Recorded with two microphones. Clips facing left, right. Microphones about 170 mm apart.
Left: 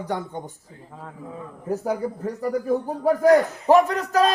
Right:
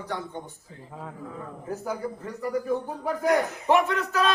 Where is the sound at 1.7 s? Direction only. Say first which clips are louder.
Left 6 dB; 40° left (ahead or behind).